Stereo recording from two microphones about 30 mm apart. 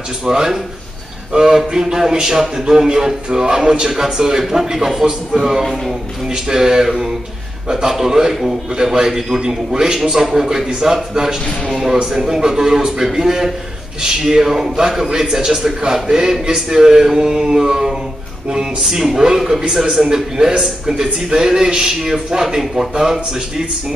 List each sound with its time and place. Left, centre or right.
0.2 s a man's voice: right